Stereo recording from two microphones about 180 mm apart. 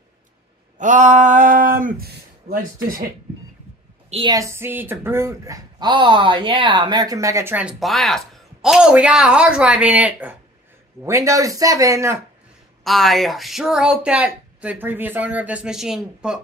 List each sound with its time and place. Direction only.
0.7 s a sound: 45° right (ahead or behind)
4.1 s a woman's voice: 30° right (ahead or behind)
4.4 s speech: 15° right (ahead or behind)
12.8 s speech: centre (ahead or behind)